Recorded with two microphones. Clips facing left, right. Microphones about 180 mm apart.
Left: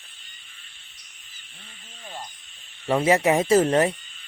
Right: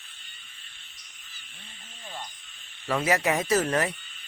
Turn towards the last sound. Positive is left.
turn(degrees=30)  # may be behind; listen again after turning